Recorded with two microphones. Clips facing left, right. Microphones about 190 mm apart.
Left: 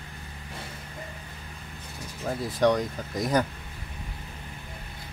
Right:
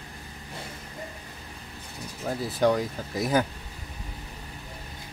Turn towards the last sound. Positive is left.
turn(degrees=-5)  # may be behind; listen again after turning